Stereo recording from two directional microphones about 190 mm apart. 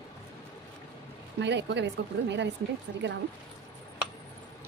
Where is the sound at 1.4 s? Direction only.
65° right (ahead or behind).